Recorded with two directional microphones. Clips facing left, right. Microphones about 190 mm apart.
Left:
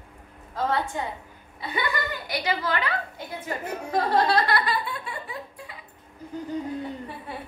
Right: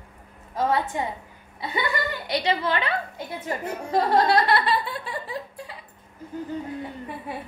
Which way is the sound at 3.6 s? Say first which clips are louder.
Right 2 dB; 25° right (ahead or behind).